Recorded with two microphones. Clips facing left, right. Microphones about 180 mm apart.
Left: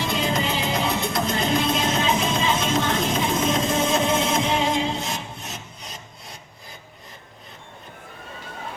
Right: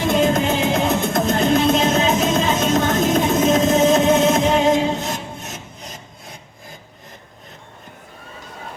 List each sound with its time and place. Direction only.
0.0 s music: 50° right (ahead or behind)